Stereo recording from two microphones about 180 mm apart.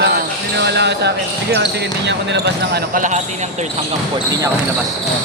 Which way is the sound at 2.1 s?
70° right (ahead or behind).